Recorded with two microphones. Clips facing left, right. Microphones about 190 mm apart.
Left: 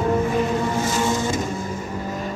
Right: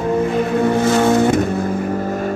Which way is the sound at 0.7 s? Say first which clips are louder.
Right 8 dB; 60° right (ahead or behind).